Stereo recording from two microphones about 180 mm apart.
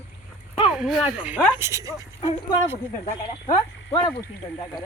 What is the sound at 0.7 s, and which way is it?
Speech, centre (ahead or behind).